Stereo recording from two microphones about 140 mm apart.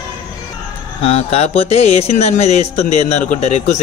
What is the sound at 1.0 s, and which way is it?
Speech, 50° left (ahead or behind).